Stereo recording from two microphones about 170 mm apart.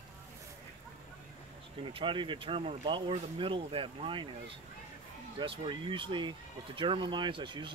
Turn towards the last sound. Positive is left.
turn(degrees=-30)  # may be behind; listen again after turning